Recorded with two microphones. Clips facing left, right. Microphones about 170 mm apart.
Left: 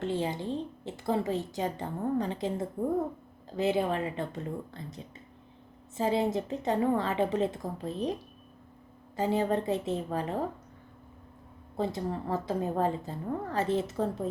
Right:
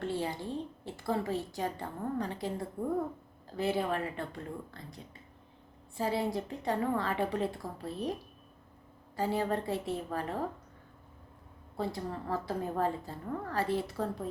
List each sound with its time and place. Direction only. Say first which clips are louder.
0.0 s a woman's voice: left 3 dB; 20° left (ahead or behind)
6.0 s a woman's voice: left 4 dB; 20° left (ahead or behind)
11.8 s a woman's voice: left 4 dB; 20° left (ahead or behind)